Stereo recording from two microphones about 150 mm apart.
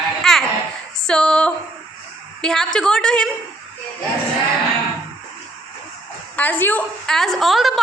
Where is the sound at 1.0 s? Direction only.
5° left (ahead or behind).